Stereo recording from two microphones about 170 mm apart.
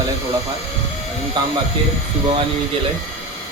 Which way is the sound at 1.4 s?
25° right (ahead or behind).